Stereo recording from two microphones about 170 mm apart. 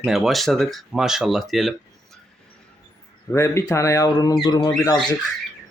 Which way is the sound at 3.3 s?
15° left (ahead or behind).